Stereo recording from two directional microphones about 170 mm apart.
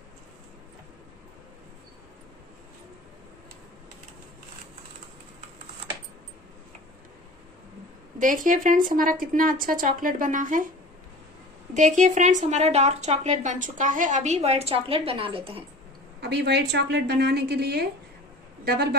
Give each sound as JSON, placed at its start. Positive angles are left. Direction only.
{"t": 8.2, "sound": "speech", "side_deg": -50}
{"t": 11.7, "sound": "speech", "side_deg": -45}
{"t": 16.2, "sound": "a woman's voice", "side_deg": -80}